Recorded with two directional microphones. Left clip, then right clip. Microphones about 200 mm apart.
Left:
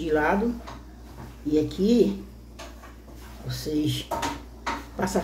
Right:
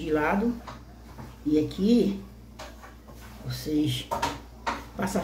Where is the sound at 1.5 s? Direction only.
5° left (ahead or behind).